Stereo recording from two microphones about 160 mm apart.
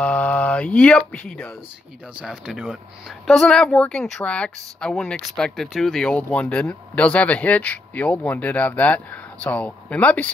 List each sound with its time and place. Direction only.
0.0 s speech: 10° left (ahead or behind)
2.1 s a woman's voice: 5° right (ahead or behind)